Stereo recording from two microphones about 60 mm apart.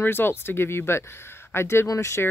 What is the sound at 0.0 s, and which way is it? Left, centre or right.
Speech, left.